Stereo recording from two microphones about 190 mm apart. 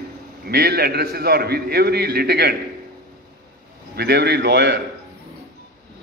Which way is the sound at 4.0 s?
60° right (ahead or behind).